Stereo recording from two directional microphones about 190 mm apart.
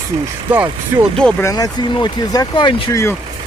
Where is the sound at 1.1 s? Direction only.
5° left (ahead or behind).